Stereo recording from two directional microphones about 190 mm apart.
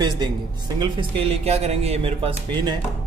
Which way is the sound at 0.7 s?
25° right (ahead or behind).